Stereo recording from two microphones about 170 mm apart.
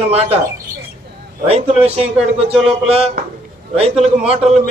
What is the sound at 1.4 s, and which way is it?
Speech, 35° right (ahead or behind).